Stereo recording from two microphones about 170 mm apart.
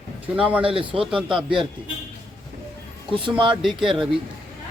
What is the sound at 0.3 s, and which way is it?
Speech, 10° right (ahead or behind).